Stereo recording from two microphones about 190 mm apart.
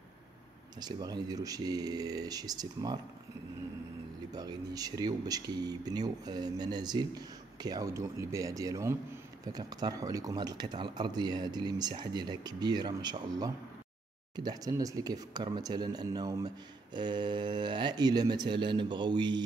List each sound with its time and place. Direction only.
0.7 s speech: 20° right (ahead or behind)
4.3 s speech: 20° right (ahead or behind)